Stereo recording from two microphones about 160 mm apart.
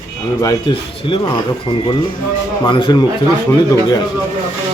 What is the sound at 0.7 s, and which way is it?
Speech, 30° left (ahead or behind).